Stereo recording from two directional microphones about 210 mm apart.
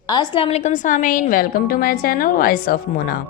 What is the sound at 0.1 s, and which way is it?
A woman's voice, 20° left (ahead or behind).